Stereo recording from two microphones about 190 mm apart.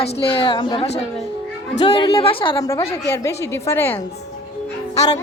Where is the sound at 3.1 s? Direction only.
15° left (ahead or behind).